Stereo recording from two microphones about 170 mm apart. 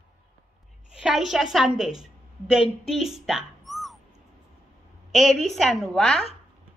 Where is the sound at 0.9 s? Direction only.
Centre (ahead or behind).